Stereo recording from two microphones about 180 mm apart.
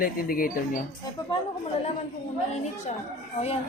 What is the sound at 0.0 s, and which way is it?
Speech, 55° left (ahead or behind).